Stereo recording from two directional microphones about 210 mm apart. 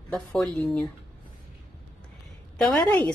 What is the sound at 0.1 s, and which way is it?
Speech, centre (ahead or behind).